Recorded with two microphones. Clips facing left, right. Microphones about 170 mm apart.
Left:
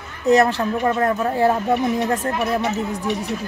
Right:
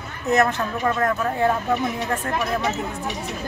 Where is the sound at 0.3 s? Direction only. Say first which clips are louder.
Left 4 dB; 30° left (ahead or behind).